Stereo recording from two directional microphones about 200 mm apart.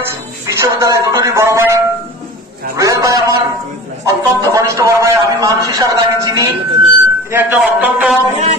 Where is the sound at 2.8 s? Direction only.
15° right (ahead or behind).